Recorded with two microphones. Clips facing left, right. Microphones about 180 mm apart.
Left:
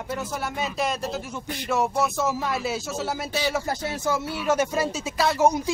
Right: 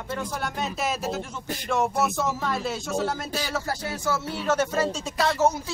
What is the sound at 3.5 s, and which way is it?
Speech, 20° left (ahead or behind).